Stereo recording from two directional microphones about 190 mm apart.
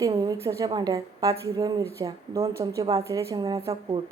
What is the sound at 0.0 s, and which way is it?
A woman's voice, 20° right (ahead or behind).